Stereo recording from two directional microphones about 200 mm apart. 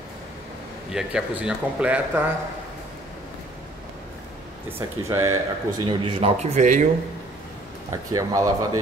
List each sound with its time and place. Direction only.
0.9 s speech: 5° right (ahead or behind)
4.7 s a man's voice: 15° right (ahead or behind); by 6.9 s 40° right (ahead or behind)
7.9 s speech: 15° right (ahead or behind)